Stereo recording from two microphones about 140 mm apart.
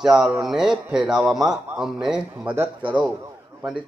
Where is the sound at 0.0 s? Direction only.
5° right (ahead or behind).